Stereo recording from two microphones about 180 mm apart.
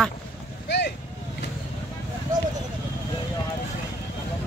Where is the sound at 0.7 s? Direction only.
70° left (ahead or behind).